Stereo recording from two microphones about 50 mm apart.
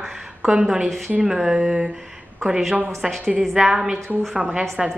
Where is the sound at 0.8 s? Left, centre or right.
Centre.